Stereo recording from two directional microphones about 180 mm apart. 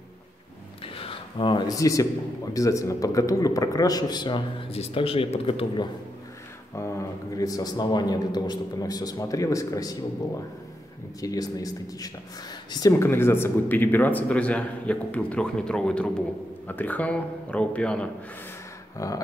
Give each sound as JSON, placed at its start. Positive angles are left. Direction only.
{"t": 0.9, "sound": "speech", "side_deg": 30}
{"t": 6.7, "sound": "speech", "side_deg": 15}
{"t": 11.1, "sound": "speech", "side_deg": 20}
{"t": 18.9, "sound": "speech", "side_deg": 20}